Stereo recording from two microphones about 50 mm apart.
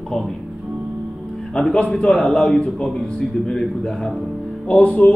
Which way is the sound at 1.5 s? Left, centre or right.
Centre.